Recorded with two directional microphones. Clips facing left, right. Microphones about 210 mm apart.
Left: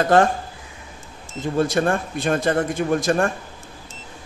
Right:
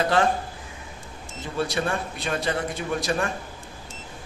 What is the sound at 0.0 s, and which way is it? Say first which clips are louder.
Speech: left 5 dB; 45° left (ahead or behind).